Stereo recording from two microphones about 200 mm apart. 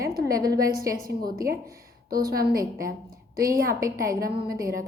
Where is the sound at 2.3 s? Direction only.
45° right (ahead or behind).